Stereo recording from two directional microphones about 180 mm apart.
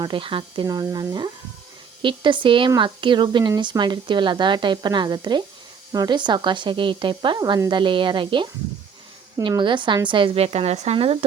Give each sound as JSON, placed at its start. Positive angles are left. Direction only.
{"t": 0.0, "sound": "a woman's voice", "side_deg": -30}